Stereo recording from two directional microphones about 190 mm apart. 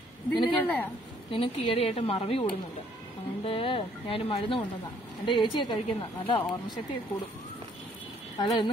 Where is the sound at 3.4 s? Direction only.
30° left (ahead or behind).